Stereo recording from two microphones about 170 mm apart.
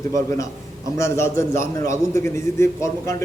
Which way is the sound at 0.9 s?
15° left (ahead or behind).